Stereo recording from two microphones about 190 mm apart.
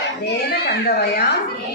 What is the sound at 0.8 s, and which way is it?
Speech, 55° left (ahead or behind).